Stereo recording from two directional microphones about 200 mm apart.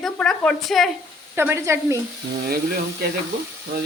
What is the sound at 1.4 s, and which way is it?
Speech, 10° right (ahead or behind).